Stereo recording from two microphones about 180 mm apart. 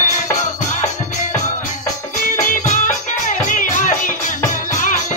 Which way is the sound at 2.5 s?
45° left (ahead or behind).